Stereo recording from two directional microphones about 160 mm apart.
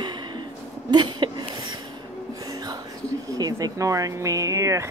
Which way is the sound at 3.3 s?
20° right (ahead or behind).